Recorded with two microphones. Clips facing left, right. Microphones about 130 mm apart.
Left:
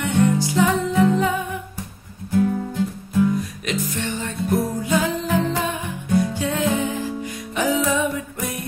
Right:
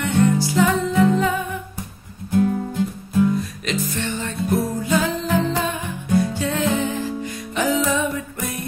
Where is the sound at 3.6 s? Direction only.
15° left (ahead or behind).